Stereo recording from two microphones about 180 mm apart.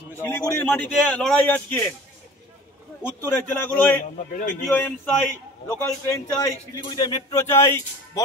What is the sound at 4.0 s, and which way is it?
Speech, 45° left (ahead or behind).